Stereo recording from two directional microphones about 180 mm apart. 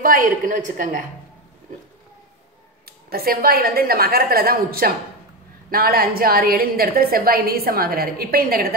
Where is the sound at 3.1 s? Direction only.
55° right (ahead or behind).